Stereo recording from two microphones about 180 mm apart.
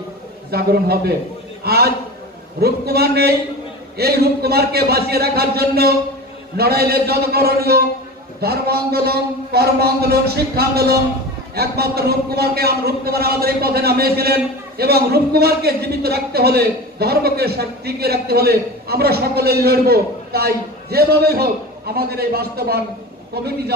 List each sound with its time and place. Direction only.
0.5 s a man's voice: 60° right (ahead or behind)